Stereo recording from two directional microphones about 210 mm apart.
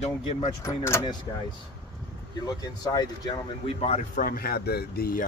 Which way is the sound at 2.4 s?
20° left (ahead or behind).